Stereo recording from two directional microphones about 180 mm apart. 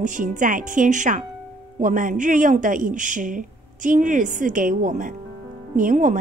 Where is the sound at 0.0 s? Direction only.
45° right (ahead or behind).